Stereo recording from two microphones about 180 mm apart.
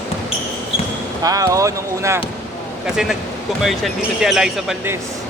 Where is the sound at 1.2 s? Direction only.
20° right (ahead or behind).